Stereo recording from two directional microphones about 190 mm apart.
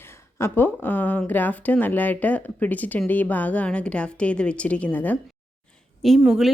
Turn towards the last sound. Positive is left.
turn(degrees=0)  # may be behind; listen again after turning